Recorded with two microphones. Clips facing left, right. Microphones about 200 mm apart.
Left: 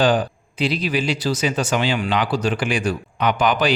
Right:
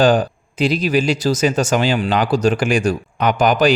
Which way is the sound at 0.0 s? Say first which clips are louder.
Right 4 dB; 45° right (ahead or behind).